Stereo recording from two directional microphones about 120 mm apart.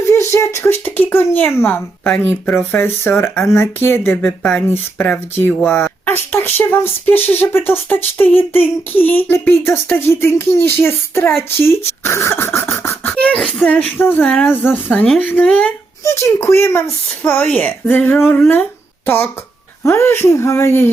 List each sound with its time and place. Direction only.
0.1 s a sound: 25° left (ahead or behind)
1.5 s speech: 20° left (ahead or behind)
13.1 s beatboxing: 10° left (ahead or behind)
13.7 s speech: 15° left (ahead or behind)